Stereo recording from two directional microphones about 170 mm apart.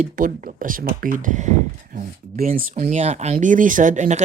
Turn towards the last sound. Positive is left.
turn(degrees=-45)  # may be behind; listen again after turning